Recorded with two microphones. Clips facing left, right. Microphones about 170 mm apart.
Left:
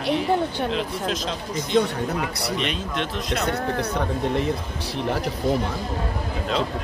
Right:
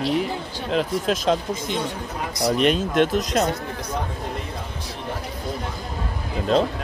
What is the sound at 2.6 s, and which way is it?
Speech, 50° right (ahead or behind).